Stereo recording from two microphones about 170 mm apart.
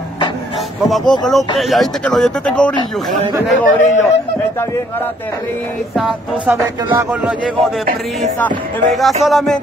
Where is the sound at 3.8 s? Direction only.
45° left (ahead or behind).